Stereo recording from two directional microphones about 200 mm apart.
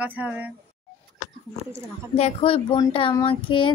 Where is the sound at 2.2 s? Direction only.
30° left (ahead or behind).